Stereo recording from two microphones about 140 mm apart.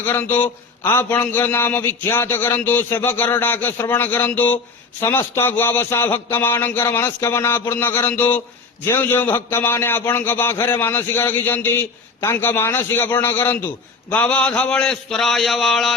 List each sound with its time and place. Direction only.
0.0 s a man's voice: 15° left (ahead or behind)